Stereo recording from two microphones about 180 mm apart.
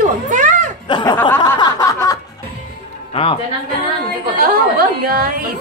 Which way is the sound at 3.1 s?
30° left (ahead or behind).